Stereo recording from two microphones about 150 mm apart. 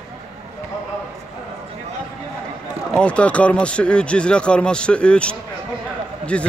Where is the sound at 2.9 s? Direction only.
10° left (ahead or behind).